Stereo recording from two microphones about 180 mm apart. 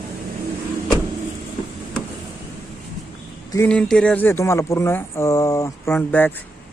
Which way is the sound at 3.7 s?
5° left (ahead or behind).